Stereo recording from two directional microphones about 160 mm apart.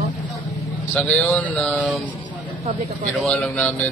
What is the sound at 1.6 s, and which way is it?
Mantra, 5° left (ahead or behind).